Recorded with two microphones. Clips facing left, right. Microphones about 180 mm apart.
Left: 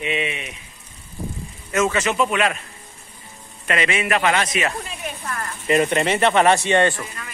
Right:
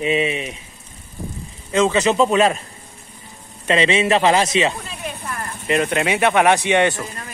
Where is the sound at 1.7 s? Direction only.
20° right (ahead or behind).